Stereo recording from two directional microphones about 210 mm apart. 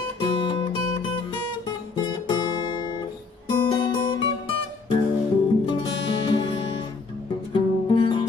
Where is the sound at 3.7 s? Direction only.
20° left (ahead or behind).